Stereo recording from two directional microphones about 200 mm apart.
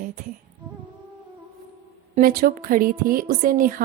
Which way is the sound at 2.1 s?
45° right (ahead or behind).